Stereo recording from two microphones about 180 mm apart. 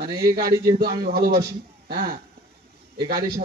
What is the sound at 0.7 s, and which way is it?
A man's voice, 55° right (ahead or behind).